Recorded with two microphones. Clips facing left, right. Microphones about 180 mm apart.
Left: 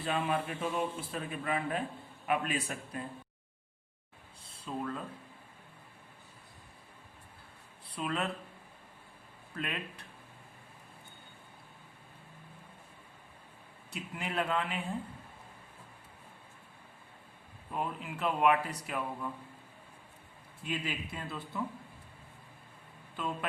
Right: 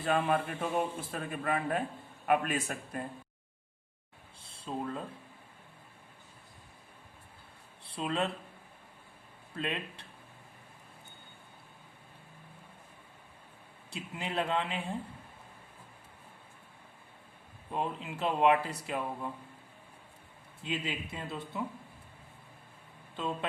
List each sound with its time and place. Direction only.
0.0 s a man's voice: 45° right (ahead or behind)
4.4 s a sound: 25° right (ahead or behind)
7.9 s speech: 25° right (ahead or behind)
9.6 s speech: 25° right (ahead or behind)
13.9 s speech: 25° right (ahead or behind)
17.7 s speech: 25° right (ahead or behind)
20.7 s speech: 20° right (ahead or behind)
23.1 s speech: 25° right (ahead or behind)